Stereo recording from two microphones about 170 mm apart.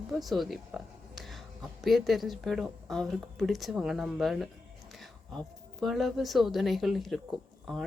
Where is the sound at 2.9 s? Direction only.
Centre (ahead or behind).